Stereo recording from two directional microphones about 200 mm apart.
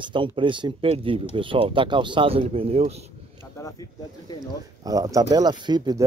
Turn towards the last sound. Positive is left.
turn(degrees=-20)  # may be behind; listen again after turning